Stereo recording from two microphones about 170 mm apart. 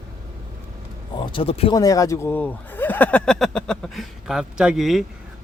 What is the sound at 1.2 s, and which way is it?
Speech, 30° left (ahead or behind).